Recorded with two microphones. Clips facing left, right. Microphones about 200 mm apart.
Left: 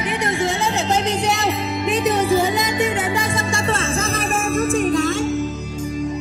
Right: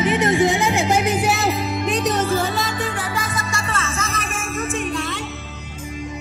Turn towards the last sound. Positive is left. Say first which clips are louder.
# left 7 dB
turn(degrees=40)  # may be behind; listen again after turning